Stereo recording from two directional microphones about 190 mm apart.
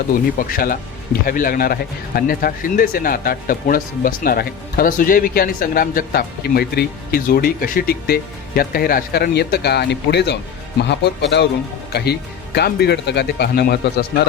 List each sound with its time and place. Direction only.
0.3 s speech: 45° left (ahead or behind)